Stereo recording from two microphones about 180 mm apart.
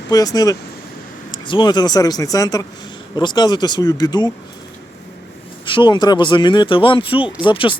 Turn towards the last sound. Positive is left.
turn(degrees=30)  # may be behind; listen again after turning